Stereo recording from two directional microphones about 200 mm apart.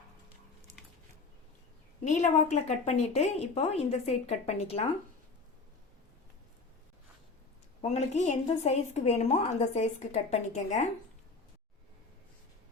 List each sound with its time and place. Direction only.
2.0 s a woman's voice: 35° left (ahead or behind)
7.8 s a woman's voice: 35° left (ahead or behind)